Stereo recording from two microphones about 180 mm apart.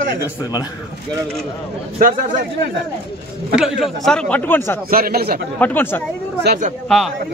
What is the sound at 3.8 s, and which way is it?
Speech, centre (ahead or behind).